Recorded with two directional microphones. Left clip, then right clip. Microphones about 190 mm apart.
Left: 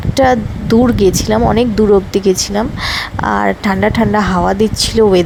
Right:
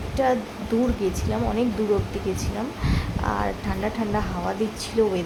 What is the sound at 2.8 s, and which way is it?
Speech, 50° left (ahead or behind).